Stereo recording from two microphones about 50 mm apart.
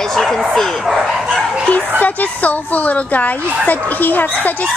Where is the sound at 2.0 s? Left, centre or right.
Left.